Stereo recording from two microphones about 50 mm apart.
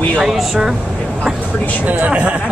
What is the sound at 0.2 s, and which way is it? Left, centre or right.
Speech, centre.